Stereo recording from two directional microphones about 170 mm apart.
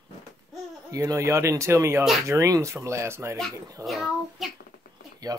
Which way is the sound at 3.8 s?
Centre (ahead or behind).